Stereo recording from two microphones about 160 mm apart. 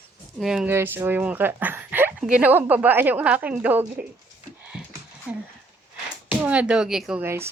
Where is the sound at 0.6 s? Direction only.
15° right (ahead or behind).